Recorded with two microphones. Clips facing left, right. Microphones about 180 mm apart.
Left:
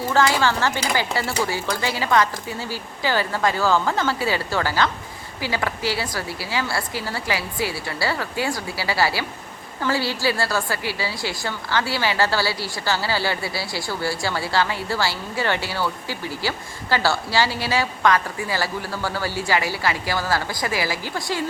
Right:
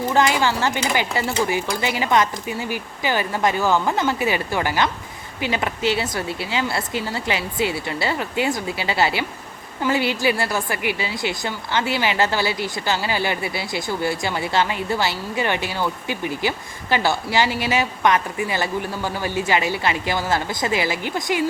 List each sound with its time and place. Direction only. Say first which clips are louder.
0.1 s a woman's voice: even; 20° right (ahead or behind)